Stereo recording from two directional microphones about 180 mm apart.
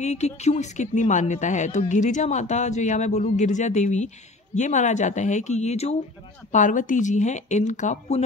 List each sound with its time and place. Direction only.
0.0 s speech: 40° left (ahead or behind)